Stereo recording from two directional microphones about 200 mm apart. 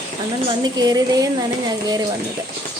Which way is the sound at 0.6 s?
20° right (ahead or behind).